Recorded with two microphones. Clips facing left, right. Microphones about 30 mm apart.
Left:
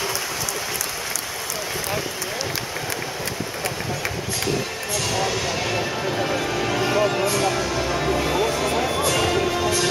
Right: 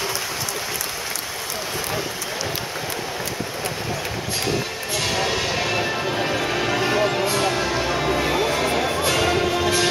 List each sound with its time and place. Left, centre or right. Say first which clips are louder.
4.9 s music: right 1 dB; right
7.2 s music: even; right